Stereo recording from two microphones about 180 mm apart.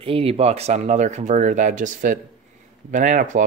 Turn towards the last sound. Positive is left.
turn(degrees=-45)  # may be behind; listen again after turning